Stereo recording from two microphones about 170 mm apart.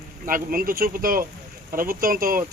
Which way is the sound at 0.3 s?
55° right (ahead or behind).